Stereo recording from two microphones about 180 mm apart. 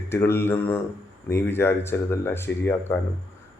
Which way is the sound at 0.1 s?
15° left (ahead or behind).